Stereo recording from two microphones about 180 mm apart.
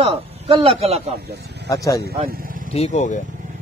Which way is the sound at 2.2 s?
55° right (ahead or behind).